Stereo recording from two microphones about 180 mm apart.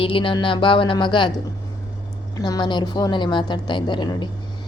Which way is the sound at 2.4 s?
20° left (ahead or behind).